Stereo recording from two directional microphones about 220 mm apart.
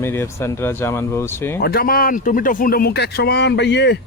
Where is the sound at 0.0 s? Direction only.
10° left (ahead or behind).